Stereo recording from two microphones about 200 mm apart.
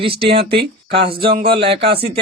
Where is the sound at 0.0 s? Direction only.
25° right (ahead or behind).